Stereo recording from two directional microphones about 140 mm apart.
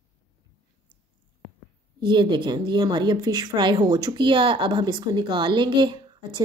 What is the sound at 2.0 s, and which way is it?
A woman's voice, 35° right (ahead or behind).